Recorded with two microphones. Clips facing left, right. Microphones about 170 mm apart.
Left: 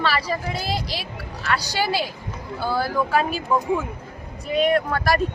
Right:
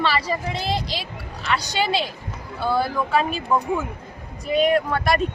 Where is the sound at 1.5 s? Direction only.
20° right (ahead or behind).